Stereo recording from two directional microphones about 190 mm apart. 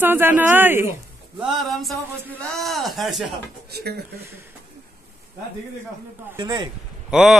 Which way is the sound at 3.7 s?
55° right (ahead or behind).